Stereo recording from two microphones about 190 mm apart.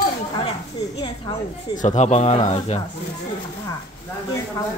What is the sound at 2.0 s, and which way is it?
Speech, 35° left (ahead or behind).